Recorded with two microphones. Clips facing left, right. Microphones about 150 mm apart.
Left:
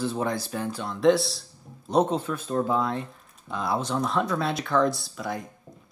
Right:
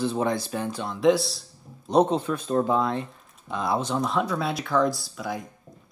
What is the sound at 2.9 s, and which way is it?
Speech, centre (ahead or behind).